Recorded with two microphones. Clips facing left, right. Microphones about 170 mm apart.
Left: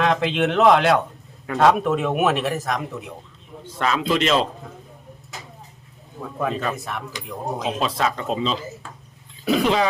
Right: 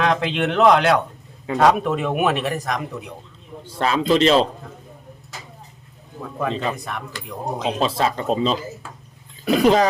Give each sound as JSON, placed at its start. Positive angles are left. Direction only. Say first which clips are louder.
{"t": 0.0, "sound": "speech", "louder": "even", "side_deg": 0}
{"t": 3.7, "sound": "speech", "louder": "right 3 dB", "side_deg": -35}
{"t": 6.1, "sound": "speech", "louder": "even", "side_deg": 0}
{"t": 7.8, "sound": "speech", "louder": "right 4 dB", "side_deg": -30}
{"t": 9.4, "sound": "speech", "louder": "right 1 dB", "side_deg": 0}